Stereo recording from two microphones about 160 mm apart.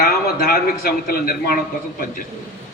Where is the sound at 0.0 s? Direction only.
70° left (ahead or behind).